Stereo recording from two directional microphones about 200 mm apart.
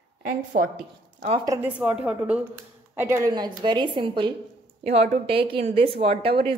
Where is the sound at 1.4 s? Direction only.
5° right (ahead or behind).